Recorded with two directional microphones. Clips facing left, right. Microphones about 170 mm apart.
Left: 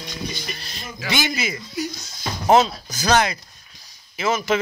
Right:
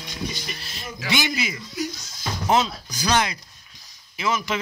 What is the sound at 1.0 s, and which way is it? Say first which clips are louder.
Speech: left 1 dB; 40° left (ahead or behind).